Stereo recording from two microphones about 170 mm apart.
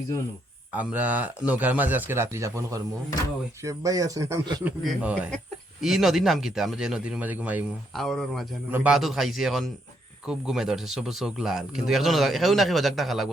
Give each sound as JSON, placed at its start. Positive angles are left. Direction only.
{"t": 0.7, "sound": "speech", "side_deg": -10}
{"t": 4.6, "sound": "speech", "side_deg": -5}
{"t": 7.9, "sound": "speech", "side_deg": 0}